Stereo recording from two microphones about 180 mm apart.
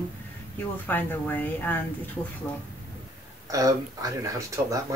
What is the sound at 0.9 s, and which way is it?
Speech, 10° left (ahead or behind).